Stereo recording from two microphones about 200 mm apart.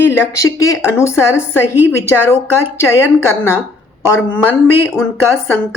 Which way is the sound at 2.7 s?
10° left (ahead or behind).